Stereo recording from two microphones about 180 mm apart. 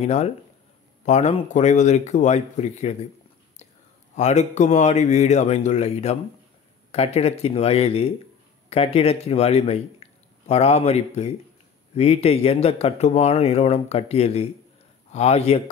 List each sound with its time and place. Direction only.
0.0 s speech: 40° left (ahead or behind)
4.1 s a man's voice: 40° left (ahead or behind)